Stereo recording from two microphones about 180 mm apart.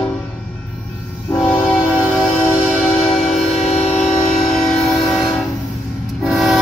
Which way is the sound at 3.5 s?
35° left (ahead or behind).